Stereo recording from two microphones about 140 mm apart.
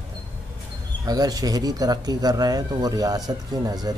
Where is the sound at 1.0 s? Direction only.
25° right (ahead or behind).